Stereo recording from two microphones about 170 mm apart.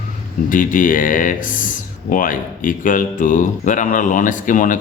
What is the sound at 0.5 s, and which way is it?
Speech, 50° left (ahead or behind).